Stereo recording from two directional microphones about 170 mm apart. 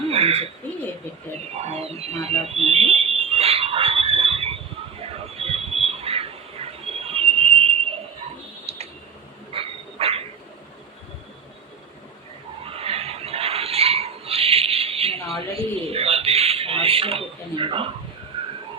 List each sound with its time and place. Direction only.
0.1 s bird: 35° right (ahead or behind)
1.6 s speech: 40° right (ahead or behind)
2.6 s a sound: 35° right (ahead or behind)
8.7 s tick: 35° right (ahead or behind)
9.5 s insect: 35° right (ahead or behind)
12.6 s a sound: 35° right (ahead or behind)